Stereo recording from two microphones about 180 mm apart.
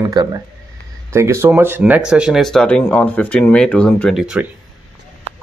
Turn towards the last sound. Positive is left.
turn(degrees=-5)  # may be behind; listen again after turning